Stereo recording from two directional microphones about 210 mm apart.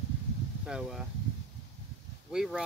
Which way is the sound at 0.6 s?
5° right (ahead or behind).